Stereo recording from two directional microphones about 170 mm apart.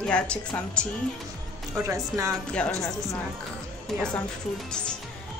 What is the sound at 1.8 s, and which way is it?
Speech, 20° right (ahead or behind).